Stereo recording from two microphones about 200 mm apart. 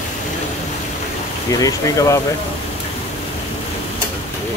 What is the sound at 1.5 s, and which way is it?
Speech, 15° left (ahead or behind).